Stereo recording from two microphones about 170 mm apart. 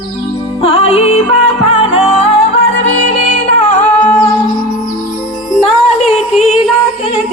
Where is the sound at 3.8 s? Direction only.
10° left (ahead or behind).